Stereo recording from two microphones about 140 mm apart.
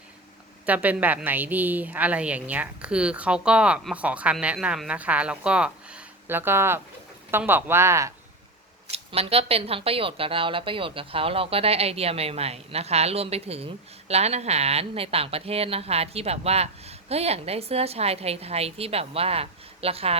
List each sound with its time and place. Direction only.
0.6 s a woman's voice: 10° right (ahead or behind)
8.9 s speech: 45° right (ahead or behind)